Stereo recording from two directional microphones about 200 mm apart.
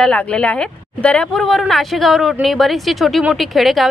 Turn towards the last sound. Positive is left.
turn(degrees=0)  # may be behind; listen again after turning